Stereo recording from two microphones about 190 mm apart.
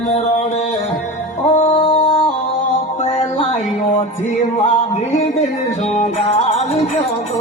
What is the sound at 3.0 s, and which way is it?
Music, 30° left (ahead or behind).